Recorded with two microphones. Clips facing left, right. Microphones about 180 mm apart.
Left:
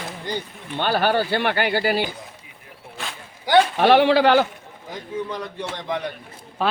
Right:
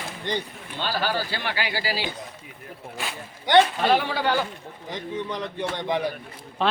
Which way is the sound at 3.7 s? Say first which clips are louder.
Left 8 dB; 70° left (ahead or behind).